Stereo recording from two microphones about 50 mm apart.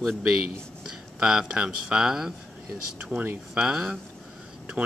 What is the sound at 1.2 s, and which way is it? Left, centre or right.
Speech, centre.